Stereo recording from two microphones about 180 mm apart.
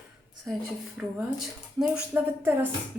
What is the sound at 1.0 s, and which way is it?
A woman's voice, 5° right (ahead or behind).